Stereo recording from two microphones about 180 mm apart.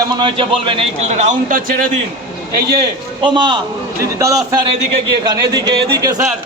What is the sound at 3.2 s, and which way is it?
A man's voice, 25° right (ahead or behind).